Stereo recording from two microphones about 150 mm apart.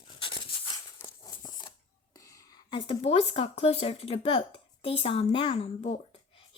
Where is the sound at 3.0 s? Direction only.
40° left (ahead or behind).